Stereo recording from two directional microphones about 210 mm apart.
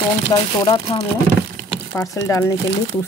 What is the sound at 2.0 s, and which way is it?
Speech, 15° left (ahead or behind).